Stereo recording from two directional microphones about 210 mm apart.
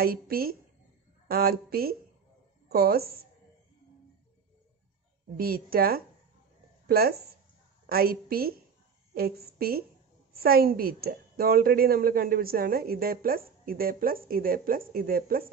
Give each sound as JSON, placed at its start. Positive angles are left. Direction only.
{"t": 0.0, "sound": "a woman's voice", "side_deg": -45}
{"t": 5.4, "sound": "a woman's voice", "side_deg": -45}